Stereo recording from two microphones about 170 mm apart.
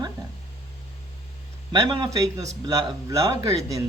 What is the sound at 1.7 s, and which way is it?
Speech, 25° right (ahead or behind).